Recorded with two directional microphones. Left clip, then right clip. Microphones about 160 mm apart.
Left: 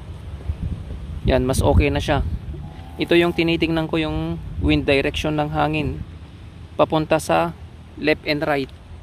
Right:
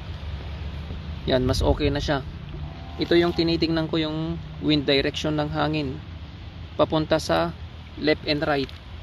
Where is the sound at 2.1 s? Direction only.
25° left (ahead or behind).